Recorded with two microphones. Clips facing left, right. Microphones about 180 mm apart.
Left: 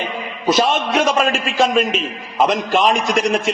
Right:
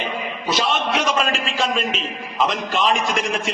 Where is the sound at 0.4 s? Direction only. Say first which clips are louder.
Left 6 dB; 45° left (ahead or behind).